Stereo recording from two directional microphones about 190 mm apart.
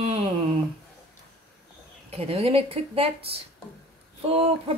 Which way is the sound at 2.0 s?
30° right (ahead or behind).